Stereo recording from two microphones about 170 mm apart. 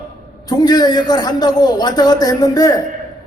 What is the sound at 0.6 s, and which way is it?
A man's voice, 25° left (ahead or behind).